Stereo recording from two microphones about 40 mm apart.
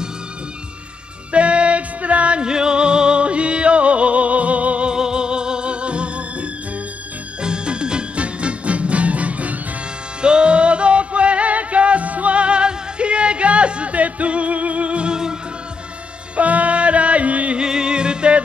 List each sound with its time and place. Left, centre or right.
1.3 s music: right
4.8 s music: centre; by 9.6 s right
10.2 s music: right
16.3 s music: right
17.6 s music: centre